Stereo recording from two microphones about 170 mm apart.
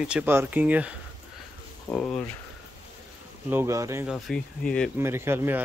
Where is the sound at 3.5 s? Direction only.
15° right (ahead or behind).